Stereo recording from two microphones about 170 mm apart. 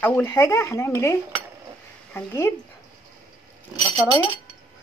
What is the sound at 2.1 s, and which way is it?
Speech, 15° left (ahead or behind).